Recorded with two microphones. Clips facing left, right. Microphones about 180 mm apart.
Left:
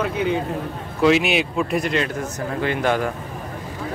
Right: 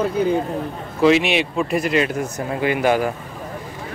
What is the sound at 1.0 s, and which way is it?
Speech, centre (ahead or behind).